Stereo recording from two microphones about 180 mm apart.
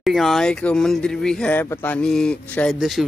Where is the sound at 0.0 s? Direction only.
Centre (ahead or behind).